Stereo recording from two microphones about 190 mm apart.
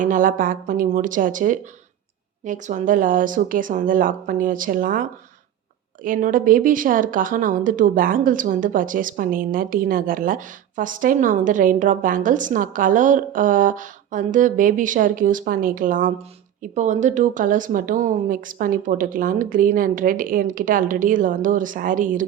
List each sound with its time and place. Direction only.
0.0 s speech: 45° right (ahead or behind)